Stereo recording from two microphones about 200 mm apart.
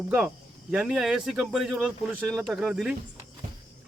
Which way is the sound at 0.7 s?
5° right (ahead or behind).